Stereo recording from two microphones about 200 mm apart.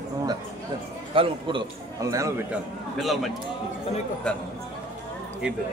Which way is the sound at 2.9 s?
Centre (ahead or behind).